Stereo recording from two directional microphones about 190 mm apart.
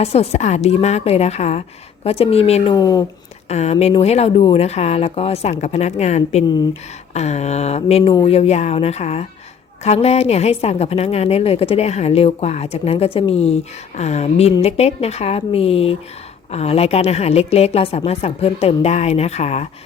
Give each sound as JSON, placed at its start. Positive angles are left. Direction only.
{"t": 0.0, "sound": "a woman's voice", "side_deg": 35}
{"t": 2.7, "sound": "speech", "side_deg": 20}
{"t": 3.5, "sound": "a woman's voice", "side_deg": 35}